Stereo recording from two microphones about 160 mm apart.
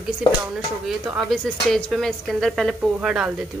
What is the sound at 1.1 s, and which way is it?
Speech, 5° right (ahead or behind).